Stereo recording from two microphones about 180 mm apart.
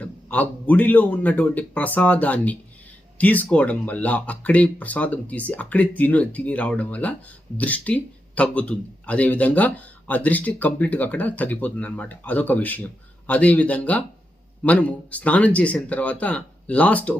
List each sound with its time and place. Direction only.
0.0 s speech: 10° left (ahead or behind)